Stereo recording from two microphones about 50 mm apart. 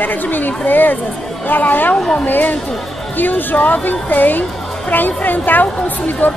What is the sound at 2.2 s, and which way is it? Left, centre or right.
A woman's voice, left.